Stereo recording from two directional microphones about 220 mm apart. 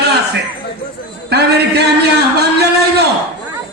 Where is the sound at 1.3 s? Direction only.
45° right (ahead or behind).